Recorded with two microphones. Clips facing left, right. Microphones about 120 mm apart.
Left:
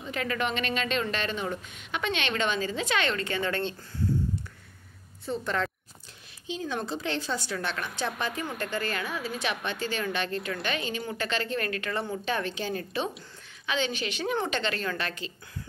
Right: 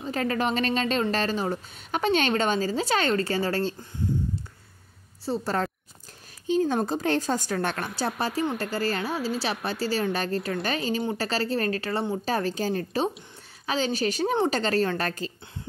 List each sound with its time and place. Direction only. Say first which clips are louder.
0.0 s speech: right 4 dB; 35° right (ahead or behind)
5.2 s a woman's voice: right 3 dB; 35° right (ahead or behind)